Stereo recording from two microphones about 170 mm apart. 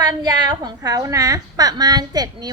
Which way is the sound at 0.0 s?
25° right (ahead or behind).